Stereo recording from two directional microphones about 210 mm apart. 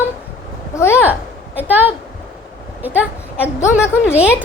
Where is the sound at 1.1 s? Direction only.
10° right (ahead or behind).